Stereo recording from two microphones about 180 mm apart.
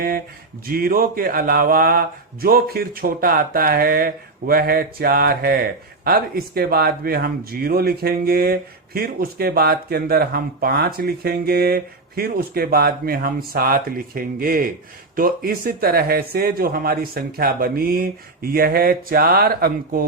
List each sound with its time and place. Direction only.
0.7 s speech: 55° right (ahead or behind)